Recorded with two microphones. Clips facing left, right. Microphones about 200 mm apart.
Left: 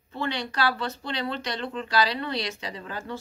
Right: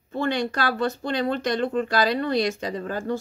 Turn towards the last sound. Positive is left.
turn(degrees=-45)  # may be behind; listen again after turning